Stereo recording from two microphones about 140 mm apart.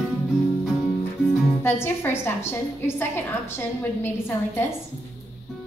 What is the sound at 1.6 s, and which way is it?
A woman's voice, 15° left (ahead or behind).